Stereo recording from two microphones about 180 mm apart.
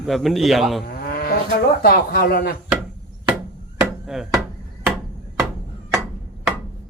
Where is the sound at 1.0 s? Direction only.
55° left (ahead or behind).